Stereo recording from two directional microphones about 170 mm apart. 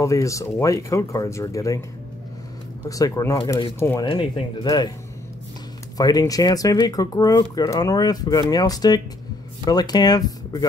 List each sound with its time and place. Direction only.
0.0 s speech: 20° left (ahead or behind)
2.9 s speech: 20° left (ahead or behind)
5.9 s speech: 20° left (ahead or behind)